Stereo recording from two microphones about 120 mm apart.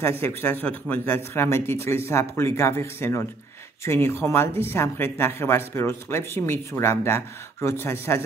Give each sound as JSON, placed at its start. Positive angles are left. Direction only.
{"t": 0.0, "sound": "speech", "side_deg": 20}